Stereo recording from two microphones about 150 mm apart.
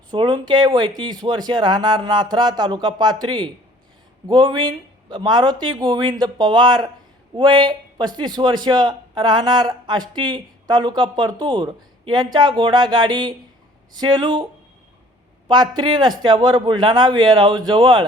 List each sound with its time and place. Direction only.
0.1 s a man's voice: 30° right (ahead or behind)
15.4 s a man's voice: 30° right (ahead or behind)